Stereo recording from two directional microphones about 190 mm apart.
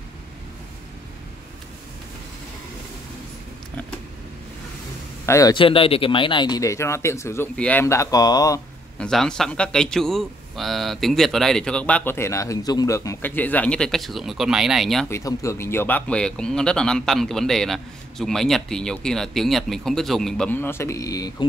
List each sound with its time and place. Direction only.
5.2 s speech: 15° left (ahead or behind)
8.9 s speech: 5° left (ahead or behind)
15.0 s speech: 15° left (ahead or behind)